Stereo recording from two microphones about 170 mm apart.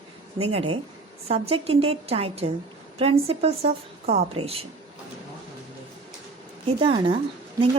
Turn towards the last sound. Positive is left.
turn(degrees=-30)  # may be behind; listen again after turning